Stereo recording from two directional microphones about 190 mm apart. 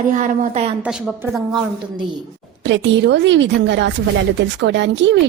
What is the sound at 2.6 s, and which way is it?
Speech, 70° right (ahead or behind).